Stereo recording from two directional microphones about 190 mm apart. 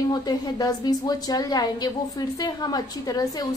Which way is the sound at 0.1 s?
20° left (ahead or behind).